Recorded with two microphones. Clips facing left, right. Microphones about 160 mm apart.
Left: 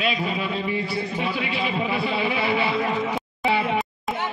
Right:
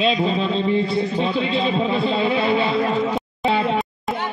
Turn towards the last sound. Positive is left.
turn(degrees=-20)  # may be behind; listen again after turning